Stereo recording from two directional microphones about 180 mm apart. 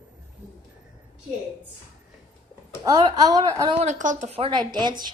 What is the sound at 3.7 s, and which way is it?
A woman's voice, 45° right (ahead or behind).